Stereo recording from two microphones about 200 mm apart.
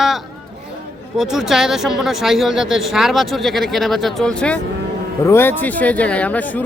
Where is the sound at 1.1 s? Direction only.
Centre (ahead or behind).